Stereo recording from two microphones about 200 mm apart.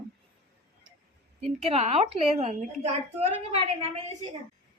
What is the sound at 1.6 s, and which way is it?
A woman's voice, 30° right (ahead or behind).